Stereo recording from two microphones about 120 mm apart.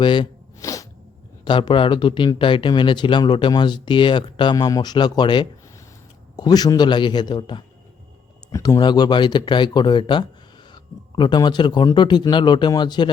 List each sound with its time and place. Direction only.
0.0 s speech: 45° left (ahead or behind)
0.6 s sneeze: 25° left (ahead or behind)
1.5 s speech: 45° left (ahead or behind)
8.5 s speech: 25° left (ahead or behind)
8.8 s speech: 40° left (ahead or behind)